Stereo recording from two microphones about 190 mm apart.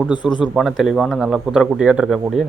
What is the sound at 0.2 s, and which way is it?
Speech, 25° left (ahead or behind).